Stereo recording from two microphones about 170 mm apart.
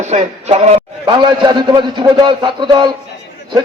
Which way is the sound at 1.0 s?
25° right (ahead or behind).